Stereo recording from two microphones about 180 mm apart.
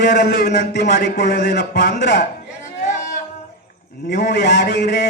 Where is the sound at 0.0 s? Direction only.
70° left (ahead or behind).